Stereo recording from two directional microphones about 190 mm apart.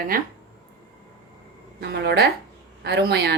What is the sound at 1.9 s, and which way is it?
A woman's voice, 60° right (ahead or behind).